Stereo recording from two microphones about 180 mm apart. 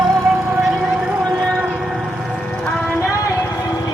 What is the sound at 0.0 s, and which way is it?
Music, centre (ahead or behind).